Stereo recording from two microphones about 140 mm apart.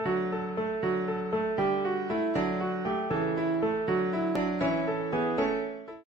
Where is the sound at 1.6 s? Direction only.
25° left (ahead or behind).